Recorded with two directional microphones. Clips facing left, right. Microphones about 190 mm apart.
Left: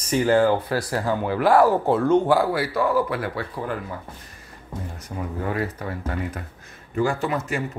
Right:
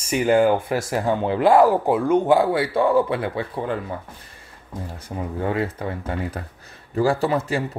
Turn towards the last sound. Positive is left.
turn(degrees=-30)  # may be behind; listen again after turning